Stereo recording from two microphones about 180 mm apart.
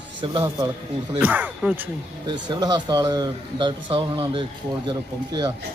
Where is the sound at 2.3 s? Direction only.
25° right (ahead or behind).